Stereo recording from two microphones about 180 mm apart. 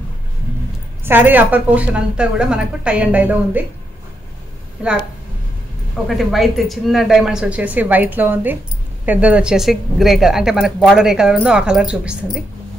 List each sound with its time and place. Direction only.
1.0 s a woman's voice: 10° right (ahead or behind)
4.8 s speech: 5° right (ahead or behind)
6.0 s speech: centre (ahead or behind)